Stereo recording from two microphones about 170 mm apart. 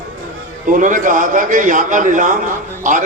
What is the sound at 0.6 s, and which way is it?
A man's voice, 50° right (ahead or behind).